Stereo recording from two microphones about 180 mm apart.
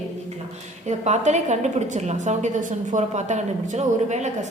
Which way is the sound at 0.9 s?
40° right (ahead or behind).